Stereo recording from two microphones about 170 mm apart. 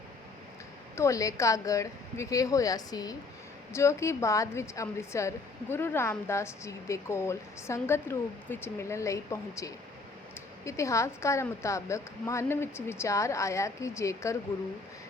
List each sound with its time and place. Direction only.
0.9 s a woman's voice: 20° left (ahead or behind)